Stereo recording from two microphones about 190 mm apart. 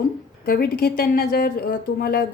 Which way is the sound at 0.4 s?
55° left (ahead or behind).